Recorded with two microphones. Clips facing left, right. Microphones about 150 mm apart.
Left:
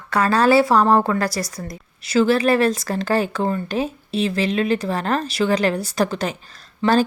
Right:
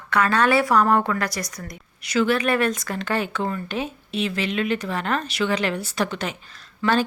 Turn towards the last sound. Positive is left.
turn(degrees=25)  # may be behind; listen again after turning